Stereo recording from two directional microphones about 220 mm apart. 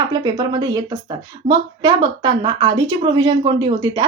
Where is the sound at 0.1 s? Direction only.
20° right (ahead or behind).